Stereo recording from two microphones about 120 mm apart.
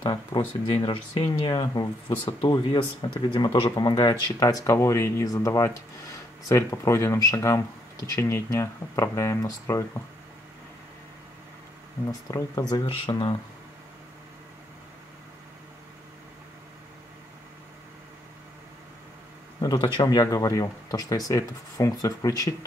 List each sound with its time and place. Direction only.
0.0 s speech: 35° left (ahead or behind)
1.5 s speech: 35° left (ahead or behind)
12.1 s speech: 30° left (ahead or behind)
19.6 s speech: 35° left (ahead or behind)